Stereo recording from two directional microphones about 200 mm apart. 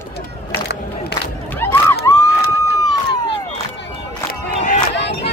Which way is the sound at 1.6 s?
15° left (ahead or behind).